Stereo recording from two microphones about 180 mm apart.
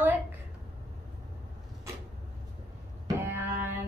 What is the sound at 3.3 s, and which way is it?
Music, 10° right (ahead or behind).